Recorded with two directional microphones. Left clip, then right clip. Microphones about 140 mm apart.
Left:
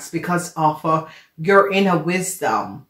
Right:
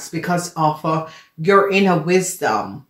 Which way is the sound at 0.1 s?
40° right (ahead or behind).